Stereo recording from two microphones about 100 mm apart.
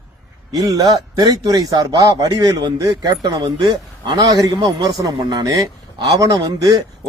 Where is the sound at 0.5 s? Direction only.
35° right (ahead or behind).